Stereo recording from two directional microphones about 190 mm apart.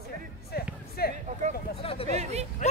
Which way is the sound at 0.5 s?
55° left (ahead or behind).